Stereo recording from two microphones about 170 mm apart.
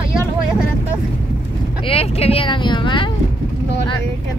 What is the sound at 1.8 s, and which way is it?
Vehicle, 35° left (ahead or behind).